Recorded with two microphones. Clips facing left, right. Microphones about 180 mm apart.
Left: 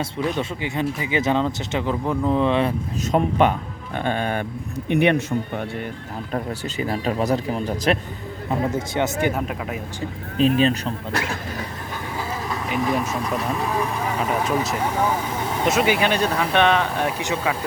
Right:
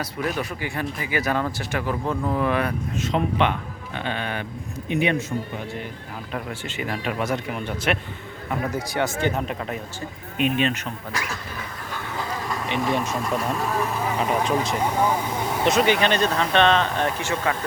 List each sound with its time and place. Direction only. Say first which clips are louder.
0.3 s speech: left 3 dB; 20° left (ahead or behind)
3.0 s a man's voice: left 4 dB; 45° left (ahead or behind)
4.9 s a man's voice: left 4 dB; 60° left (ahead or behind)
6.3 s speech: left 4 dB; 35° left (ahead or behind)
8.4 s speech: left 3 dB; 25° left (ahead or behind)
9.2 s speech: left 1 dB; 5° left (ahead or behind)
10.3 s speech: left 5 dB; 35° left (ahead or behind)
12.1 s speech: left 1 dB; 5° left (ahead or behind)